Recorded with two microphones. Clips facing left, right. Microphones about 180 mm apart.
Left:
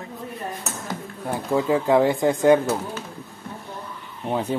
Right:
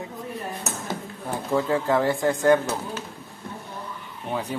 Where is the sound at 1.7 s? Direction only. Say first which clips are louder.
Left 6 dB; 20° left (ahead or behind).